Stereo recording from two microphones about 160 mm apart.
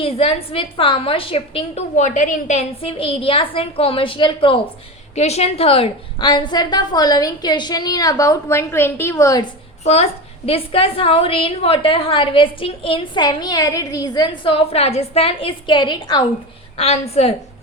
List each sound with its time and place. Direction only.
0.0 s a woman's voice: 35° left (ahead or behind)
2.0 s a woman's voice: 50° left (ahead or behind); by 9.5 s 20° left (ahead or behind)
9.8 s a woman's voice: 40° left (ahead or behind)
16.7 s a woman's voice: 40° left (ahead or behind)